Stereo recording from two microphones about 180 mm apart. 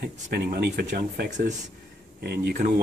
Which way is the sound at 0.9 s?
45° right (ahead or behind).